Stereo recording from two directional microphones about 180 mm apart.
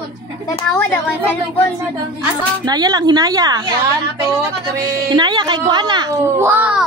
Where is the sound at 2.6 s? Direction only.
20° right (ahead or behind).